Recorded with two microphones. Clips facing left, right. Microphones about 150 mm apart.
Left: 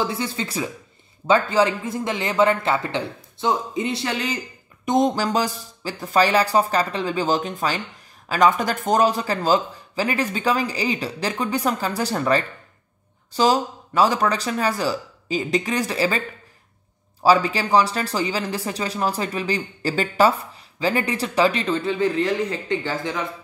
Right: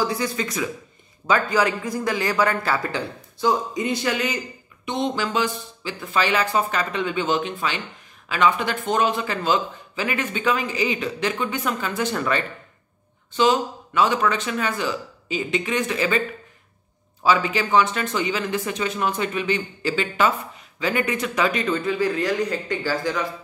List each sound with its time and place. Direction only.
0.0 s speech: 25° left (ahead or behind)
4.8 s speech: 40° left (ahead or behind)
17.2 s speech: 35° left (ahead or behind)